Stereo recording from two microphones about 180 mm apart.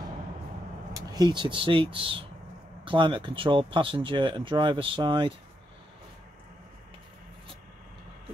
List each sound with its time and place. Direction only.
0.9 s speech: 20° right (ahead or behind)